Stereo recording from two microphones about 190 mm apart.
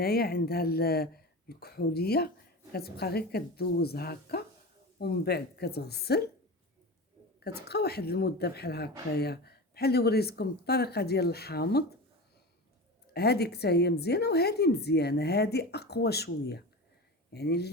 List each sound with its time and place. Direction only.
0.0 s a woman's voice: 55° left (ahead or behind)
7.3 s a woman's voice: 55° left (ahead or behind)
13.1 s a woman's voice: 60° left (ahead or behind)